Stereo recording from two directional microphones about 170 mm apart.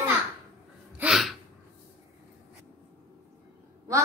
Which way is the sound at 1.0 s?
Centre (ahead or behind).